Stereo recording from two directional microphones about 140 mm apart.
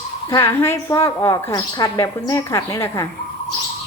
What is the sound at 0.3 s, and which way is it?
Speech, 20° left (ahead or behind).